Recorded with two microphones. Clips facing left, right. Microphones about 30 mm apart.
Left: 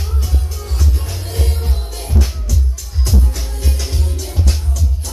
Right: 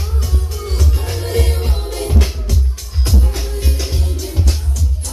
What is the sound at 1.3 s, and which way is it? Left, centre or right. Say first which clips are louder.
Music: right 5 dB; right.